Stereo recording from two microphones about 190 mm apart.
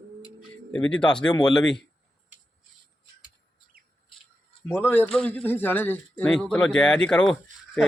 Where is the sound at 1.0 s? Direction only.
5° left (ahead or behind).